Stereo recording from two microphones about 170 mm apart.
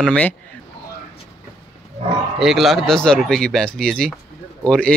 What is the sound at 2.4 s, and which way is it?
Speech, centre (ahead or behind).